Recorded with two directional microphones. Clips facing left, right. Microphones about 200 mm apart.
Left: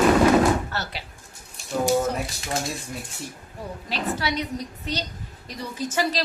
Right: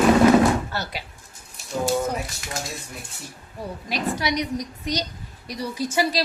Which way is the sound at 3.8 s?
15° right (ahead or behind).